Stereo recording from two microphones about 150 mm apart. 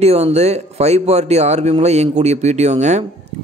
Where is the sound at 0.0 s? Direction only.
45° right (ahead or behind).